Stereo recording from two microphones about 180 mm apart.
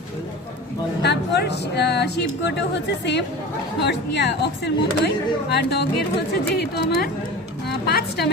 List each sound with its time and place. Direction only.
1.0 s a woman's voice: 70° left (ahead or behind)